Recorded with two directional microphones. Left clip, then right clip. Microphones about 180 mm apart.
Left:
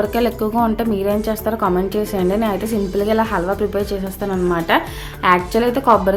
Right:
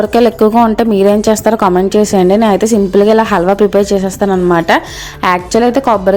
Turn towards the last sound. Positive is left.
turn(degrees=-35)  # may be behind; listen again after turning